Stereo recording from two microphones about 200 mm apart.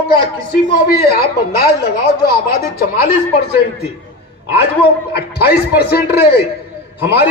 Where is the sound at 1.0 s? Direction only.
50° left (ahead or behind).